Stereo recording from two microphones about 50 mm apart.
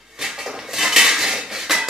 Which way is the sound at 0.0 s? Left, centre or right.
Centre.